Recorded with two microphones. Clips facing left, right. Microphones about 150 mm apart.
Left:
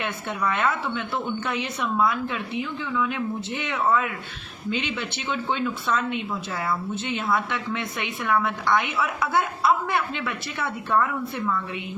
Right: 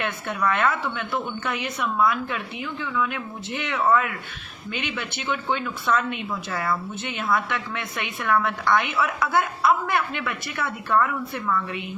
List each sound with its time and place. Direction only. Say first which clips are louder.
0.0 s a woman's voice: right 2 dB; 25° left (ahead or behind)
3.8 s a woman's voice: right 2 dB; 20° left (ahead or behind)